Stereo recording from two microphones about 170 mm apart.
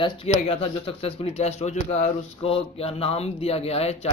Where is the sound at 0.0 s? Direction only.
35° left (ahead or behind).